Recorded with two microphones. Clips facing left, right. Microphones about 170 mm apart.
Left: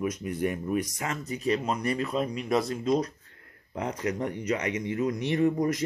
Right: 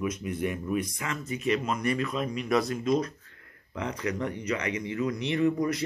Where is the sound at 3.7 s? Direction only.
45° left (ahead or behind).